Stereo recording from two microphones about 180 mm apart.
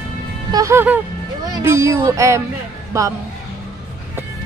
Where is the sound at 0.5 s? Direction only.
15° right (ahead or behind).